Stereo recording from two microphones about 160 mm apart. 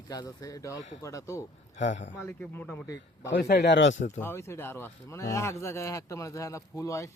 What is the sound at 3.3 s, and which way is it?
Speech, 90° left.